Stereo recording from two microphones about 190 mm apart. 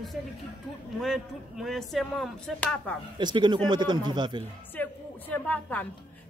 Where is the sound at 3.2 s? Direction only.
25° right (ahead or behind).